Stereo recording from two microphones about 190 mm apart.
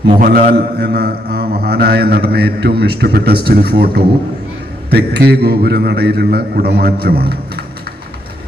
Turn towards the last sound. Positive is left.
turn(degrees=-55)  # may be behind; listen again after turning